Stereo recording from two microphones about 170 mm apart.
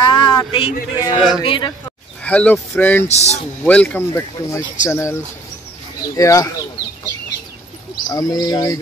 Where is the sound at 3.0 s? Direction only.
40° left (ahead or behind).